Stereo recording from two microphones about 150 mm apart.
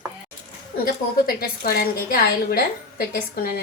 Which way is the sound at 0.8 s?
85° left.